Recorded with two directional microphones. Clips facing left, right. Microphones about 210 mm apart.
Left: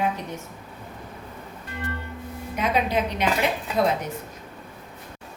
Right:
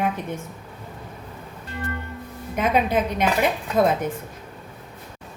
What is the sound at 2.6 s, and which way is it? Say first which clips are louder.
Speech: right 3 dB; 50° right (ahead or behind).